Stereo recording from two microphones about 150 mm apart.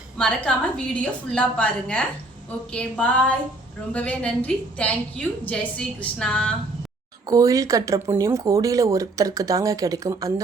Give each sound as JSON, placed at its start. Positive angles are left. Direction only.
{"t": 0.2, "sound": "a woman's voice", "side_deg": 5}
{"t": 7.3, "sound": "speech", "side_deg": -25}